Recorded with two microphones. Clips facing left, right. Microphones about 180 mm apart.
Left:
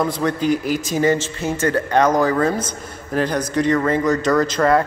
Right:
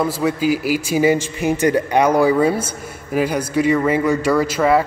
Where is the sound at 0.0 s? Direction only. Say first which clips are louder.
Right 1 dB; 5° right (ahead or behind).